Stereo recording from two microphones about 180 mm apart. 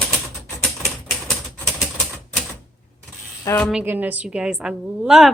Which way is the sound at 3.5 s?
15° left (ahead or behind).